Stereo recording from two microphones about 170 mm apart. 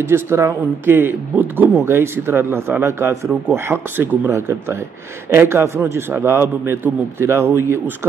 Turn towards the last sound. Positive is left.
turn(degrees=-15)  # may be behind; listen again after turning